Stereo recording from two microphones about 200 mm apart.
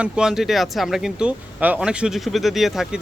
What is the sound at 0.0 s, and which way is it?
Speech, 5° right (ahead or behind).